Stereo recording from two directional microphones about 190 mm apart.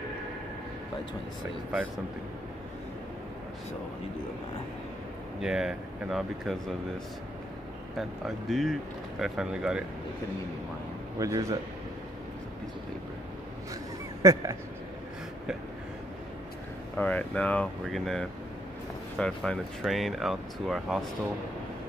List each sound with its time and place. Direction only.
5.4 s speech: 5° right (ahead or behind)
8.0 s speech: centre (ahead or behind)
11.1 s a man's voice: 15° right (ahead or behind)
14.2 s speech: 20° right (ahead or behind)
16.9 s speech: 10° left (ahead or behind)